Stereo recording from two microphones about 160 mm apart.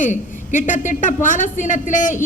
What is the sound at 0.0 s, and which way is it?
A woman's voice, 50° left (ahead or behind).